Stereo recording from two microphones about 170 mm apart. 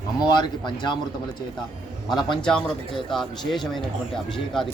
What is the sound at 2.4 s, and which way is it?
Speech, 5° left (ahead or behind).